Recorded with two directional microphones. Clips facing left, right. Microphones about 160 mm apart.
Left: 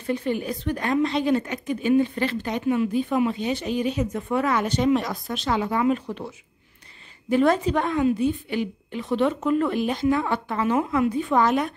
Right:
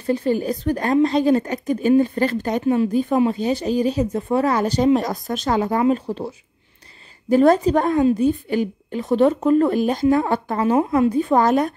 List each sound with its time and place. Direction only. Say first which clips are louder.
0.0 s a woman's voice: right 5 dB; 35° right (ahead or behind)